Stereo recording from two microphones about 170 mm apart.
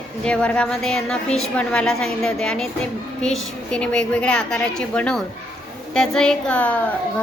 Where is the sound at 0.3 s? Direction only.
5° left (ahead or behind).